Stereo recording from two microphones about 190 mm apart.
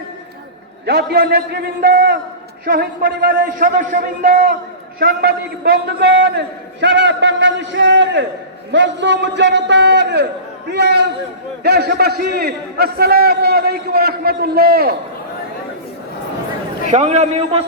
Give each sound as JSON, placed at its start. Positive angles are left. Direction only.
{"t": 0.9, "sound": "a man's voice", "side_deg": -55}
{"t": 16.9, "sound": "a man's voice", "side_deg": -35}